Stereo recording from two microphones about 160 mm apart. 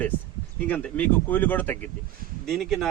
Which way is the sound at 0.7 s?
10° left (ahead or behind).